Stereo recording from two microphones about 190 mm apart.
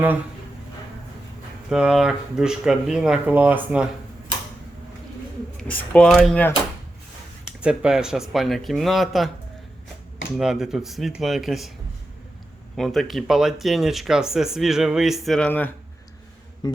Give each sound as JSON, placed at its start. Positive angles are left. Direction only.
{"t": 1.7, "sound": "speech", "side_deg": -5}
{"t": 5.5, "sound": "speech", "side_deg": 5}
{"t": 7.6, "sound": "speech", "side_deg": -5}
{"t": 10.3, "sound": "speech", "side_deg": 0}
{"t": 12.7, "sound": "speech", "side_deg": 0}
{"t": 16.6, "sound": "a sound", "side_deg": 20}